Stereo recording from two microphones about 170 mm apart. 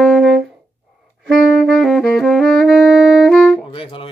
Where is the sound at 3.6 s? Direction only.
30° left (ahead or behind).